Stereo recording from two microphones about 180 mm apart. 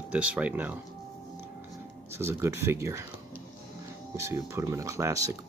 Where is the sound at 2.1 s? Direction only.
15° right (ahead or behind).